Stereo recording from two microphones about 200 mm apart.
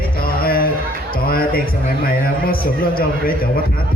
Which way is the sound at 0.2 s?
45° left (ahead or behind).